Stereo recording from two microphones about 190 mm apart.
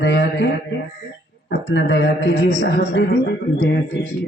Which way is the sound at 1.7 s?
65° left (ahead or behind).